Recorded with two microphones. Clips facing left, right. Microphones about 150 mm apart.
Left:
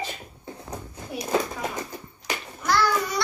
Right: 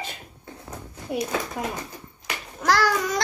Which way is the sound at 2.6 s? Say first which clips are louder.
Right 2 dB; 90° right.